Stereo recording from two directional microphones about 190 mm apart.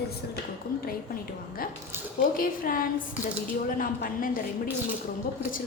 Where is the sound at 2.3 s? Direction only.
50° left (ahead or behind).